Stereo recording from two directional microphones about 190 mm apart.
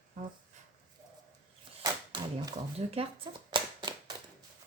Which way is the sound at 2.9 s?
30° right (ahead or behind).